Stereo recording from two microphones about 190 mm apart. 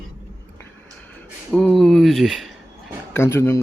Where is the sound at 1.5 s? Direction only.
Centre (ahead or behind).